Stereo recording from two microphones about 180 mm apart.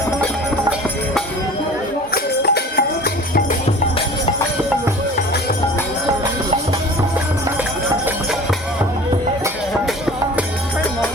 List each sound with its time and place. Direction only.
2.1 s music: 65° left (ahead or behind)